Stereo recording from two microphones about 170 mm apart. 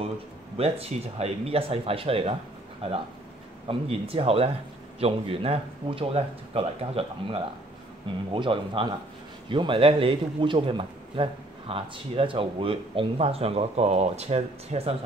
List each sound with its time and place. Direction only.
0.6 s speech: 35° right (ahead or behind)